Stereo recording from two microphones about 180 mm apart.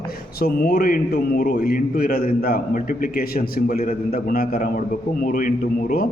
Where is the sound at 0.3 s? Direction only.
60° left (ahead or behind).